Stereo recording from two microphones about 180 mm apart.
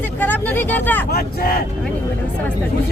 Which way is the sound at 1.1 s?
55° left (ahead or behind).